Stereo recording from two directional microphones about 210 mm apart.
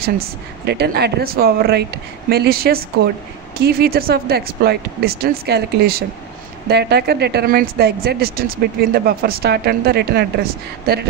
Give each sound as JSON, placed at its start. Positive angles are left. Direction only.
{"t": 0.0, "sound": "speech", "side_deg": -50}